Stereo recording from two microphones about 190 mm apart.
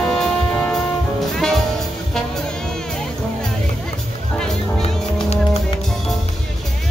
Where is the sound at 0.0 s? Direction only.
5° left (ahead or behind).